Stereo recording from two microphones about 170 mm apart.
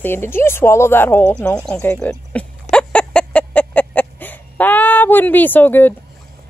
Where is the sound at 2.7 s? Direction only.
5° left (ahead or behind).